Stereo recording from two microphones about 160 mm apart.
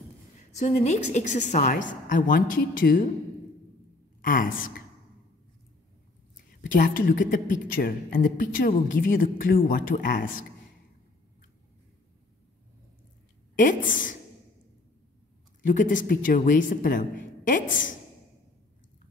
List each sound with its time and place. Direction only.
0.5 s a woman's voice: 50° left (ahead or behind)
4.2 s a woman's voice: 60° left (ahead or behind)
6.3 s a woman's voice: 55° left (ahead or behind)
13.6 s a woman's voice: 55° left (ahead or behind)
15.6 s a woman's voice: 55° left (ahead or behind)